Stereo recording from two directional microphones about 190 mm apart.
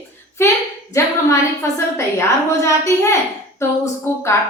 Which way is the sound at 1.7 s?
15° left (ahead or behind).